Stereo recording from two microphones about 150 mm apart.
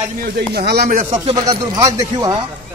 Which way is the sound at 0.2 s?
90° right.